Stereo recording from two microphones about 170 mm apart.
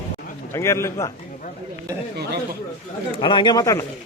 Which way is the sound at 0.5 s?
15° left (ahead or behind).